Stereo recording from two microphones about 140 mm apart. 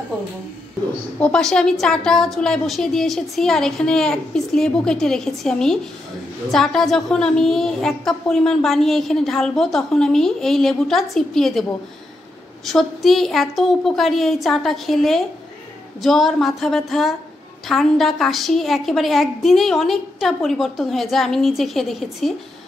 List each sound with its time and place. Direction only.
1.2 s a woman's voice: 5° left (ahead or behind)
12.6 s a woman's voice: centre (ahead or behind)